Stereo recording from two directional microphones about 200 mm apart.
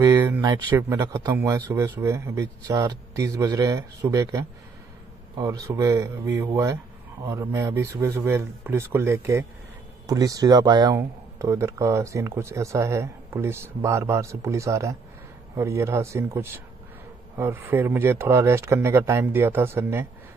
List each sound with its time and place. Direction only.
0.0 s speech: 15° right (ahead or behind)